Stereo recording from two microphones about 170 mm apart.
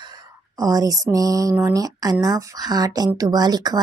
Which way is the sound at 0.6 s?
20° right (ahead or behind).